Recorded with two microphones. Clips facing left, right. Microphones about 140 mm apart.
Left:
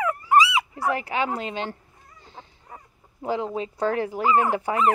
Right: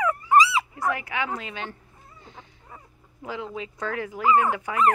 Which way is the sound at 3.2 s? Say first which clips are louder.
Left 6 dB; 35° left (ahead or behind).